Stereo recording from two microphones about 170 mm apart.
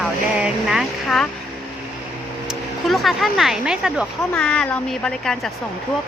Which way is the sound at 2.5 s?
Centre (ahead or behind).